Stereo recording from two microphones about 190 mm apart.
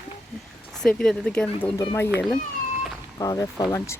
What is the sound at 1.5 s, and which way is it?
Speech, 20° left (ahead or behind).